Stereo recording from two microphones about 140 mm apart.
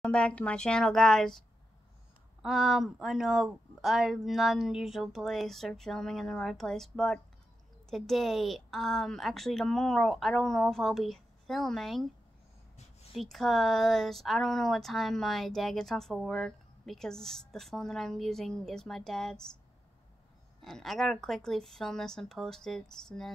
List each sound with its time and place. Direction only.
0.0 s speech: 5° left (ahead or behind)
2.4 s speech: 5° right (ahead or behind)
13.1 s speech: centre (ahead or behind)
20.6 s speech: centre (ahead or behind)